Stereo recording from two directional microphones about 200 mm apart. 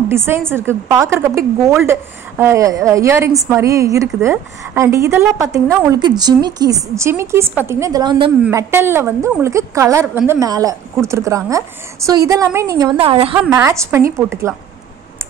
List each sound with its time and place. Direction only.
0.1 s a woman's voice: 10° right (ahead or behind); by 13.4 s 30° right (ahead or behind)
13.5 s a woman's voice: 15° right (ahead or behind)